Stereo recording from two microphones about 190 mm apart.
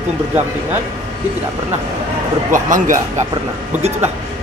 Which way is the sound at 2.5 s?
45° right (ahead or behind).